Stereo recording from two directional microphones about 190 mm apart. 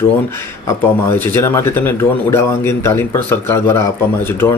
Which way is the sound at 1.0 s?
10° left (ahead or behind).